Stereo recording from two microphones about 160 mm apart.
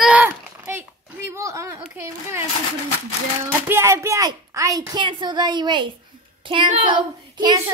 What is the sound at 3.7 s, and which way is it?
A woman's voice, 15° right (ahead or behind).